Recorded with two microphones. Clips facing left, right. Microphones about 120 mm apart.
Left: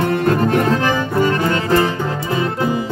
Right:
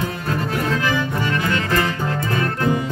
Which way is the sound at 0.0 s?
55° left (ahead or behind).